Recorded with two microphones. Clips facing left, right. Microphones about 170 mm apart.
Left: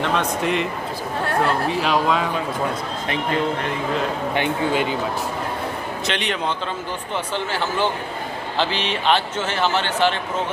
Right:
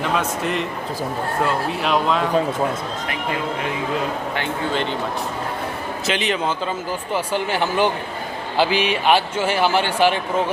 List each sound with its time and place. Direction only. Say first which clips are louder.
0.1 s a man's voice: left 1 dB; 5° right (ahead or behind)
1.7 s a man's voice: even; centre (ahead or behind)
4.4 s speech: left 4 dB; 10° left (ahead or behind)
6.1 s a man's voice: right 4 dB; centre (ahead or behind)
7.1 s speech: right 4 dB; 15° right (ahead or behind)